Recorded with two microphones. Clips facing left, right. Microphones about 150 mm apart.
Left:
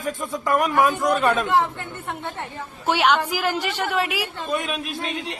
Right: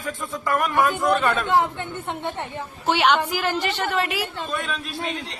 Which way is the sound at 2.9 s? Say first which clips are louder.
Even; 10° left (ahead or behind).